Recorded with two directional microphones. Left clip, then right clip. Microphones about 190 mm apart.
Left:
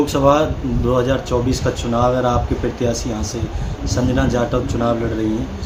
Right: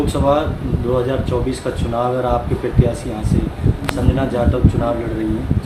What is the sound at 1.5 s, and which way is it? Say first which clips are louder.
Speech: left 2 dB; 60° left (ahead or behind).